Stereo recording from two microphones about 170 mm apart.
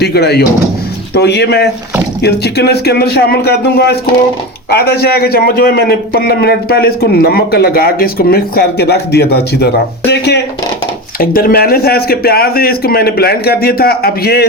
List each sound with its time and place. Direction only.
0.0 s a man's voice: 70° left (ahead or behind)
10.1 s a sound: 75° left (ahead or behind)
11.2 s a man's voice: 60° left (ahead or behind)